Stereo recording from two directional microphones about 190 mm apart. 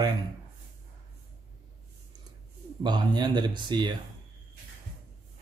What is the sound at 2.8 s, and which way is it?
A man's voice, 25° right (ahead or behind).